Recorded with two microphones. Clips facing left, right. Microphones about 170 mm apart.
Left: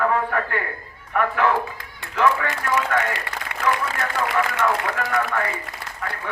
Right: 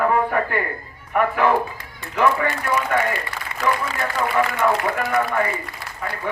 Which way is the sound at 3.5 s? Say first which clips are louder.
Right 3 dB; 70° left (ahead or behind).